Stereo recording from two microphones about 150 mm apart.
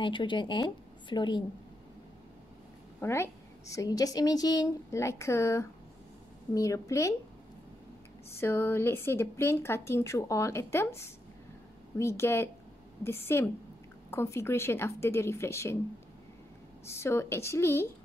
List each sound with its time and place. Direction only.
0.0 s speech: 35° left (ahead or behind)
3.0 s a woman's voice: 20° left (ahead or behind)
8.3 s speech: 15° left (ahead or behind)
16.8 s speech: 15° left (ahead or behind)